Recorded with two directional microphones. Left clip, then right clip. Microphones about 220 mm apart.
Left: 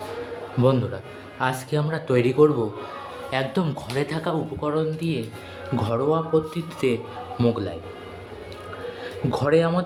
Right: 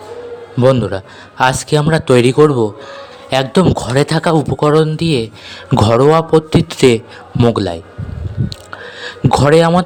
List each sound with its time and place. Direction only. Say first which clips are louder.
0.6 s a man's voice: right 10 dB; 45° right (ahead or behind)
3.8 s a man's voice: right 13 dB; 50° right (ahead or behind)
9.0 s speech: right 14 dB; 45° right (ahead or behind)